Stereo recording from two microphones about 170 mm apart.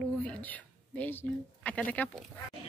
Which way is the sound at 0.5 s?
10° left (ahead or behind).